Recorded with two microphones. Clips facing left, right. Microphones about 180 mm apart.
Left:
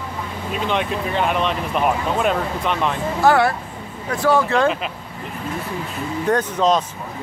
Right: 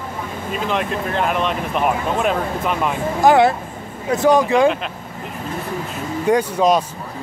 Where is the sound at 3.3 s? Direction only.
20° right (ahead or behind).